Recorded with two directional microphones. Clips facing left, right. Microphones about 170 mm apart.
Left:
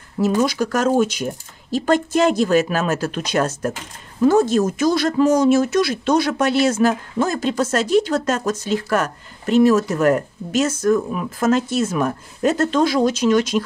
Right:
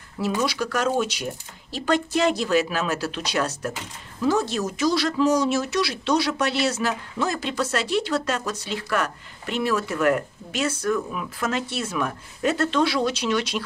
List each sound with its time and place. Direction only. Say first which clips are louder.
0.2 s speech: left 6 dB; 45° left (ahead or behind)